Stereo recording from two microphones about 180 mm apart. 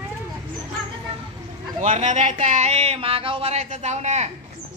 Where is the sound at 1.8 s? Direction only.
40° right (ahead or behind).